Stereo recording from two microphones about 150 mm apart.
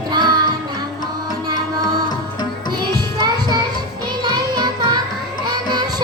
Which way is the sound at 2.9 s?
25° right (ahead or behind).